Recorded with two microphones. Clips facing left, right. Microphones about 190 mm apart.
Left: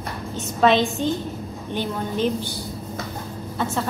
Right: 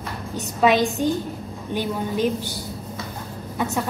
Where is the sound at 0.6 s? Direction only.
10° right (ahead or behind).